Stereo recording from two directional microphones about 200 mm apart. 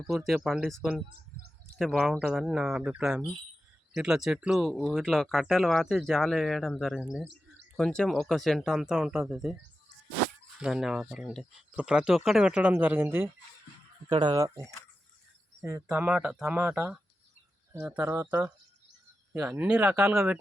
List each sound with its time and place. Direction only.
0.1 s speech: centre (ahead or behind)
7.3 s a sound: 65° right (ahead or behind)
7.8 s speech: 5° left (ahead or behind)
10.6 s speech: centre (ahead or behind)
14.1 s speech: 25° right (ahead or behind); by 20.4 s 5° right (ahead or behind)